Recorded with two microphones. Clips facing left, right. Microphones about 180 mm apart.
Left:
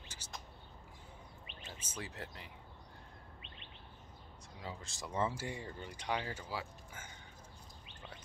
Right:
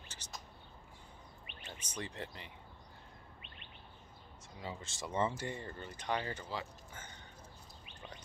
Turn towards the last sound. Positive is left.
turn(degrees=10)  # may be behind; listen again after turning